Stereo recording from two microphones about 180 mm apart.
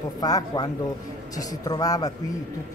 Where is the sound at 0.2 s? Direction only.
20° left (ahead or behind).